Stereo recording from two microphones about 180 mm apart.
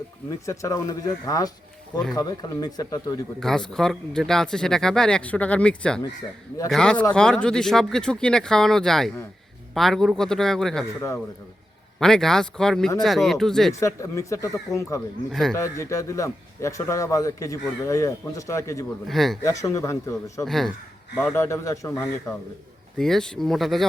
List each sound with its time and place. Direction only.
0.3 s speech: 15° left (ahead or behind)
3.4 s speech: 5° left (ahead or behind)
11.9 s speech: 5° left (ahead or behind)
13.7 s a man's voice: 15° left (ahead or behind)
15.3 s speech: centre (ahead or behind)
15.5 s a man's voice: 15° left (ahead or behind)
19.0 s speech: centre (ahead or behind)
19.4 s a man's voice: 20° left (ahead or behind)
20.4 s speech: centre (ahead or behind)
21.3 s a man's voice: 15° left (ahead or behind)
23.0 s speech: 5° left (ahead or behind)